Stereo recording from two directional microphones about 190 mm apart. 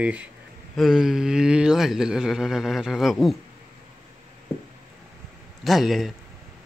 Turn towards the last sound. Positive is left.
turn(degrees=0)  # may be behind; listen again after turning